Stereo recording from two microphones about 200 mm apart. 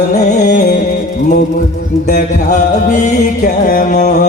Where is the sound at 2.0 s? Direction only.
40° left (ahead or behind).